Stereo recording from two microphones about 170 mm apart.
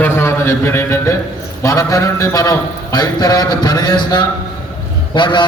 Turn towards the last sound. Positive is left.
turn(degrees=25)  # may be behind; listen again after turning